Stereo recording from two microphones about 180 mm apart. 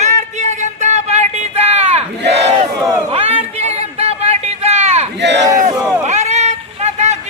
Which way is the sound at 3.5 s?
35° right (ahead or behind).